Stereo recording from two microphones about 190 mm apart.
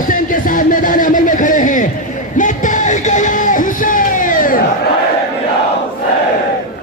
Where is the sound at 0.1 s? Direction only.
45° left (ahead or behind).